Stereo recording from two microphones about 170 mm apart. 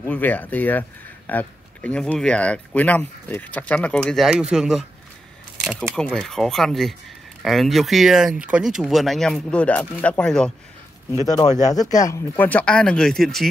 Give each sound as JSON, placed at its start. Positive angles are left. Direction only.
{"t": 0.0, "sound": "speech", "side_deg": 10}
{"t": 11.2, "sound": "speech", "side_deg": 20}